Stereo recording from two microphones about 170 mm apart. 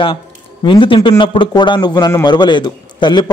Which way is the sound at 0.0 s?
30° left (ahead or behind).